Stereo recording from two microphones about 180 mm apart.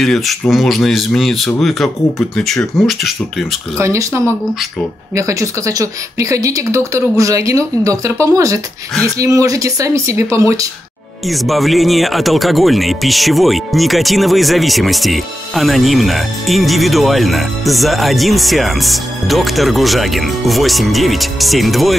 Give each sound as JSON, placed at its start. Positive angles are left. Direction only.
{"t": 0.0, "sound": "speech", "side_deg": 0}
{"t": 3.7, "sound": "speech", "side_deg": -15}
{"t": 11.2, "sound": "speech", "side_deg": 0}